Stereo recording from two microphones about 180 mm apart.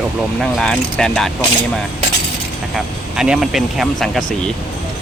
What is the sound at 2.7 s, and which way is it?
Speech, centre (ahead or behind).